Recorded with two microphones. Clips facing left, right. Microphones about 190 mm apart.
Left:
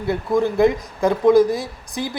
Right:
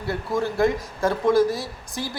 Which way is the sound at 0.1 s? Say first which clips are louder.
Left 6 dB; 20° left (ahead or behind).